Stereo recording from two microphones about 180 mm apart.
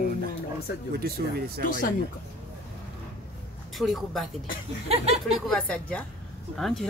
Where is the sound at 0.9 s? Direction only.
60° right (ahead or behind).